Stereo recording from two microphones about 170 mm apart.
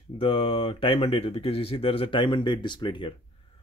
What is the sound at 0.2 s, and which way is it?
Speech, 30° left (ahead or behind).